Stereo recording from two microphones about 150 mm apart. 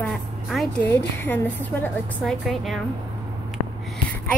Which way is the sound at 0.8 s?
15° left (ahead or behind).